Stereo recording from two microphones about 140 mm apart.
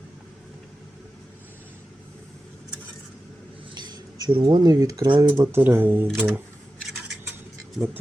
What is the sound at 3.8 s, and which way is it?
Speech, 30° right (ahead or behind).